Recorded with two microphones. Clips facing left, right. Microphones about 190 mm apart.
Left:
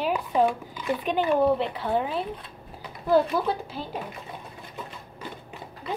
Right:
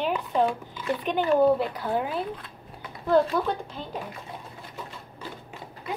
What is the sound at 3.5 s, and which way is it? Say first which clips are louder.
Speech: left 1 dB; 5° left (ahead or behind).